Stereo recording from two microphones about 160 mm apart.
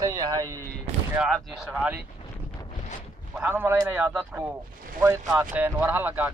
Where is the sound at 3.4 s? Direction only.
10° right (ahead or behind).